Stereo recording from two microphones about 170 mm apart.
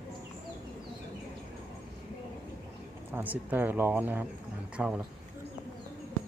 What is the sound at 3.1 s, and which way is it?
Speech, 10° right (ahead or behind).